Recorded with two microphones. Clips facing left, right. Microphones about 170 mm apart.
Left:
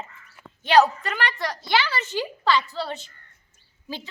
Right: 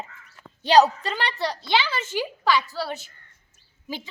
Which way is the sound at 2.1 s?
10° right (ahead or behind).